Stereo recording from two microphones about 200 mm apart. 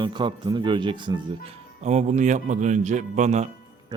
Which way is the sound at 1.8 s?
35° right (ahead or behind).